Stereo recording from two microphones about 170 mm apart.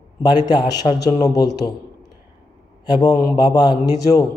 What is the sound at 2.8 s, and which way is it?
A man's voice, 25° left (ahead or behind).